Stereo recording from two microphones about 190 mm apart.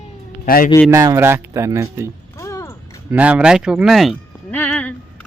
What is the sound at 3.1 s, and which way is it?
Speech, 5° right (ahead or behind).